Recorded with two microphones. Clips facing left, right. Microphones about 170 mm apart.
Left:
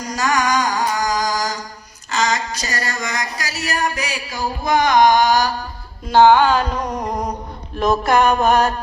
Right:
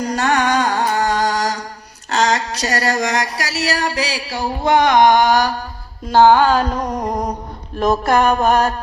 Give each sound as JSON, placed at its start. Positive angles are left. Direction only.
{"t": 0.0, "sound": "carnatic music", "side_deg": -60}
{"t": 0.3, "sound": "music", "side_deg": -60}
{"t": 2.0, "sound": "a sound", "side_deg": -70}
{"t": 6.1, "sound": "music", "side_deg": -35}
{"t": 7.0, "sound": "a sound", "side_deg": -20}
{"t": 8.0, "sound": "music", "side_deg": -40}